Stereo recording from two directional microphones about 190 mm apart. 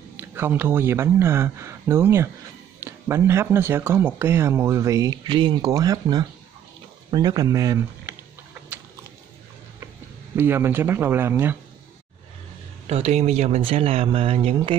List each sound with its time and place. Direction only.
0.2 s speech: 10° right (ahead or behind)
10.3 s speech: 10° right (ahead or behind)
12.8 s speech: 35° right (ahead or behind)